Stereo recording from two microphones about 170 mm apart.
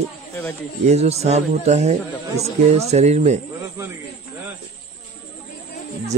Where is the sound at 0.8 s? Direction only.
40° right (ahead or behind).